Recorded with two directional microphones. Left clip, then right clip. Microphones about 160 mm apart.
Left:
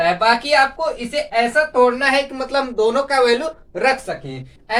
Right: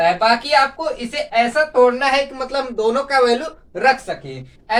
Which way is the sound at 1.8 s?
35° left (ahead or behind).